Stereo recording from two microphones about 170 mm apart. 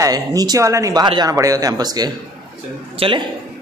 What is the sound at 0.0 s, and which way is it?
A man's voice, 20° right (ahead or behind).